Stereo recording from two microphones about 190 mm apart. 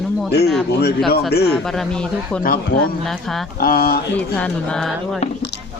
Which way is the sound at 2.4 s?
50° left (ahead or behind).